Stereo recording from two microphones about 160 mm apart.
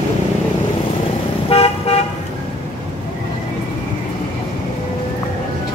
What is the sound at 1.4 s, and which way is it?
Car, 35° left (ahead or behind).